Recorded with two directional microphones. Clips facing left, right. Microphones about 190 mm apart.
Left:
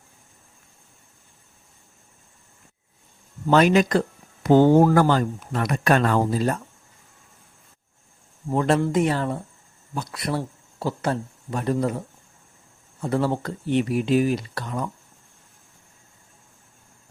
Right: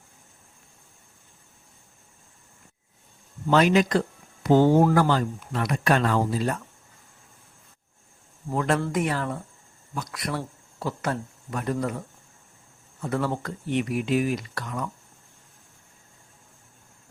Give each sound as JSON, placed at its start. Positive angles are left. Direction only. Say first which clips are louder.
{"t": 3.5, "sound": "speech", "louder": "left 2 dB", "side_deg": 50}
{"t": 8.5, "sound": "speech", "louder": "left 4 dB", "side_deg": 30}